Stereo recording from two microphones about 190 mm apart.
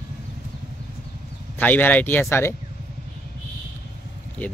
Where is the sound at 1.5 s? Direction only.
10° left (ahead or behind).